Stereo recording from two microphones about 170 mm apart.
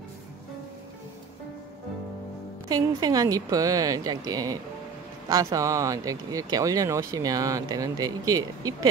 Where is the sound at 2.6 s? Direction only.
20° right (ahead or behind).